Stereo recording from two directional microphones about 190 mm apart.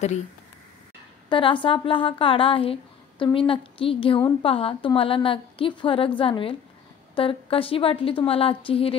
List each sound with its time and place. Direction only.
1.3 s a woman's voice: 25° left (ahead or behind)